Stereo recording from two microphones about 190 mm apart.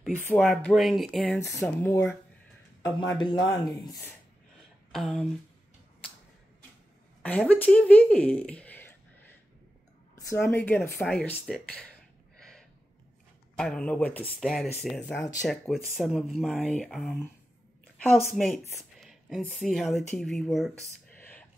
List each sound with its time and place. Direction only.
0.4 s speech: centre (ahead or behind)
1.4 s speech: 15° left (ahead or behind)
4.9 s speech: centre (ahead or behind)
7.2 s speech: 5° left (ahead or behind)
10.3 s speech: 10° left (ahead or behind)
12.4 s gasp: 5° left (ahead or behind)
13.6 s speech: 5° left (ahead or behind)
21.1 s whispering: 10° left (ahead or behind)